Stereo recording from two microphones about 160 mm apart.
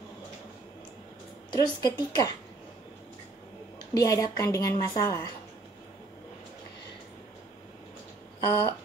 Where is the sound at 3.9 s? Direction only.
20° left (ahead or behind).